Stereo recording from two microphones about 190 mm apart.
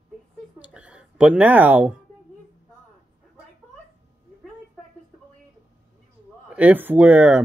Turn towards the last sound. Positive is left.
turn(degrees=-5)  # may be behind; listen again after turning